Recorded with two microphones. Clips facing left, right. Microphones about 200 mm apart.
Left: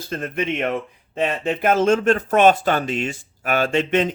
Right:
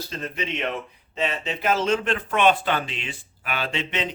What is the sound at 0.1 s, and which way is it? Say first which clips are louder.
Speech: left 8 dB; 55° left (ahead or behind).